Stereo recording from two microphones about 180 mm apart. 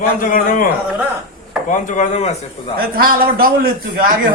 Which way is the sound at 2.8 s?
55° right (ahead or behind).